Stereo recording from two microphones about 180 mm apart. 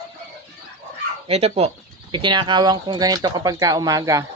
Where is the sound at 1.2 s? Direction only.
35° right (ahead or behind); by 4.2 s 20° right (ahead or behind).